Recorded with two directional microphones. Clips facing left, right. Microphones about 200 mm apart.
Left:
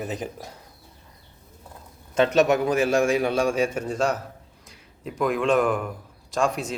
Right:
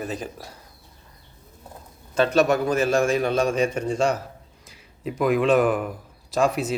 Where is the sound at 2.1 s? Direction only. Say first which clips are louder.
Even; 20° left (ahead or behind).